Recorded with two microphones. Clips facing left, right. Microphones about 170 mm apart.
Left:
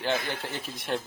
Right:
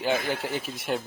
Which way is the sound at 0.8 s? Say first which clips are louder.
Even; 5° right (ahead or behind).